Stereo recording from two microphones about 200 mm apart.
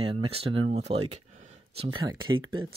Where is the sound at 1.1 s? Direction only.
30° right (ahead or behind).